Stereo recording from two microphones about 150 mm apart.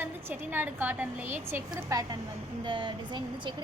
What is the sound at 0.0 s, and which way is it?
A woman's voice, 15° right (ahead or behind).